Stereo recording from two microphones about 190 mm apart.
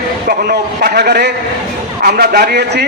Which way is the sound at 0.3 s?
55° right (ahead or behind).